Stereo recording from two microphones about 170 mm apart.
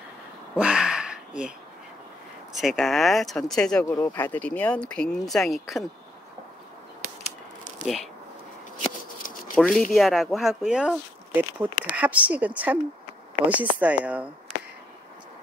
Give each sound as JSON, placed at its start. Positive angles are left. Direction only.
{"t": 0.6, "sound": "a sound", "side_deg": -5}
{"t": 2.5, "sound": "speech", "side_deg": 0}
{"t": 9.6, "sound": "speech", "side_deg": 0}